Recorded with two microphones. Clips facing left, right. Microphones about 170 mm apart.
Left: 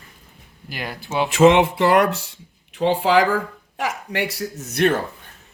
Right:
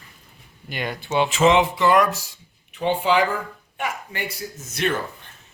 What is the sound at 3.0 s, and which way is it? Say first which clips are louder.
Speech: left 3 dB; 90° left.